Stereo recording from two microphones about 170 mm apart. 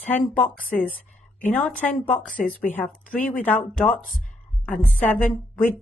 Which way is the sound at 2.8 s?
55° left (ahead or behind).